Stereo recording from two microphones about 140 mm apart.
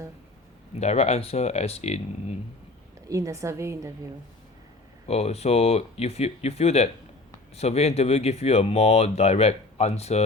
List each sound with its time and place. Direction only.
0.8 s speech: 50° left (ahead or behind)
3.1 s a woman's voice: 20° right (ahead or behind)
5.0 s speech: 50° left (ahead or behind)